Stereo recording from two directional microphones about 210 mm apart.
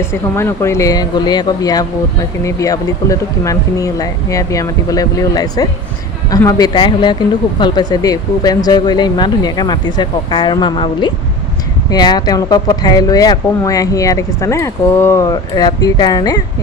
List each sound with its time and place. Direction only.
0.0 s speech: 10° left (ahead or behind)